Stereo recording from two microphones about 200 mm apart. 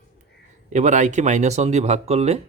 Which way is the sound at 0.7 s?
35° right (ahead or behind).